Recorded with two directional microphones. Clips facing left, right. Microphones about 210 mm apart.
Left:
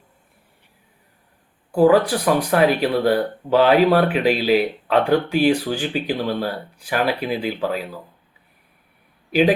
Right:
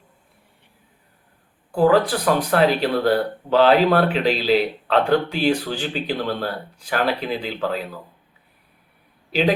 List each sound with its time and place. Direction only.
1.7 s speech: 10° left (ahead or behind)
9.3 s a man's voice: 10° left (ahead or behind)